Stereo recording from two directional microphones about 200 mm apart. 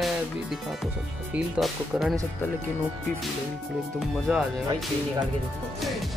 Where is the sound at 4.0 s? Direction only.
Centre (ahead or behind).